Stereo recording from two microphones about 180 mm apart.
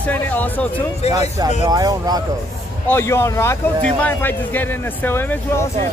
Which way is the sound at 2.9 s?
15° left (ahead or behind).